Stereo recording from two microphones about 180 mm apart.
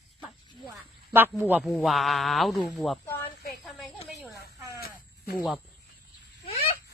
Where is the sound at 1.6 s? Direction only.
Centre (ahead or behind).